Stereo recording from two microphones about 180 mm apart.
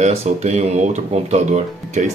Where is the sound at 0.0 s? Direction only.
40° right (ahead or behind).